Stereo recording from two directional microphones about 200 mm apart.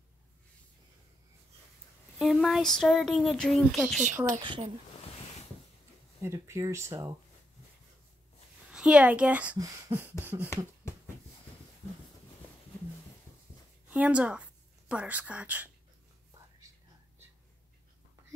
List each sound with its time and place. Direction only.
2.1 s speech: centre (ahead or behind)
4.4 s speech: 25° right (ahead or behind)
6.2 s speech: 15° right (ahead or behind)
8.7 s speech: 5° right (ahead or behind)
13.8 s a woman's voice: 5° right (ahead or behind)